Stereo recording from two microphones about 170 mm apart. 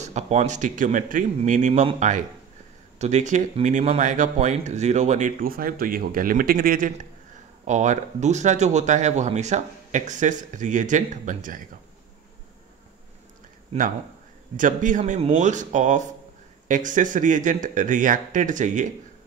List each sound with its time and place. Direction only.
0.0 s speech: 40° right (ahead or behind); by 6.9 s 55° right (ahead or behind)
7.6 s speech: 45° right (ahead or behind)
14.6 s speech: 50° right (ahead or behind)